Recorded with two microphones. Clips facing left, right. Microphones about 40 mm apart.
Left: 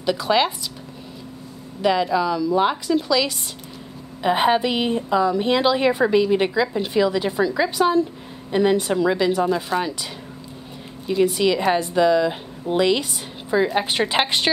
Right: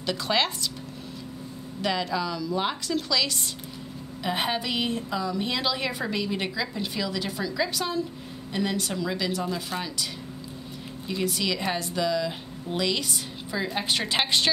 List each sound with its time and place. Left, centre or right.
0.0 s a woman's voice: centre
1.8 s a woman's voice: centre
11.1 s a woman's voice: centre